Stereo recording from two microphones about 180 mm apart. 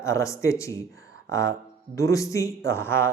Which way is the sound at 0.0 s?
15° left (ahead or behind).